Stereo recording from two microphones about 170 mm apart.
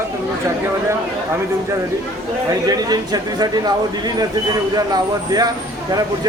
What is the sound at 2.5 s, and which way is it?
Speech, 20° right (ahead or behind).